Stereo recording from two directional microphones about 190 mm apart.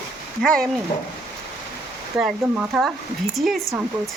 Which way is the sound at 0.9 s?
40° left (ahead or behind).